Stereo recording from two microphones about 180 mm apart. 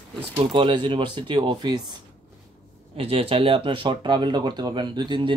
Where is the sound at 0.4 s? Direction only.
25° right (ahead or behind).